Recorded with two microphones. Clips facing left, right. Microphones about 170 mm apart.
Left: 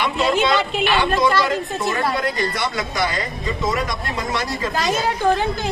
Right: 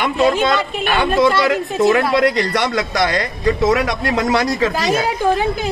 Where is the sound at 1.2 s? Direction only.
80° right.